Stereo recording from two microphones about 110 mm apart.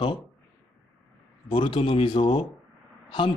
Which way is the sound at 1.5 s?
50° left (ahead or behind).